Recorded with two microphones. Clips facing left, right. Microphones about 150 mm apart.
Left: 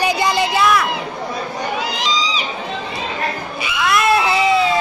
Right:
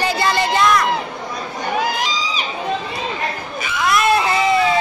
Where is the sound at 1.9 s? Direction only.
50° right (ahead or behind).